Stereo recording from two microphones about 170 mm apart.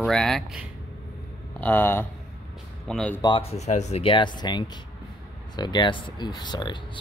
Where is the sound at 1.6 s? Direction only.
10° left (ahead or behind).